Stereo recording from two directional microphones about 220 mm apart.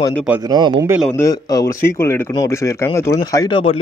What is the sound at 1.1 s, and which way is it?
A man's voice, 15° left (ahead or behind).